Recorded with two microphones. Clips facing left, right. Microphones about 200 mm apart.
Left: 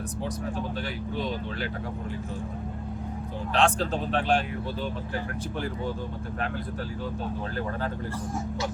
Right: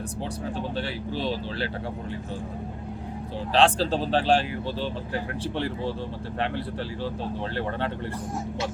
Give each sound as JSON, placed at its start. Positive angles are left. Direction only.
{"t": 0.5, "sound": "speech", "side_deg": -30}
{"t": 3.5, "sound": "speech", "side_deg": -30}